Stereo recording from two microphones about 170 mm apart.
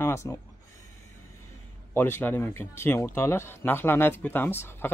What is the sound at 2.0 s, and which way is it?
Speech, 15° left (ahead or behind).